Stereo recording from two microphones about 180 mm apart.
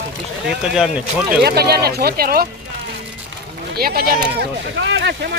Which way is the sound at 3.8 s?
55° right (ahead or behind).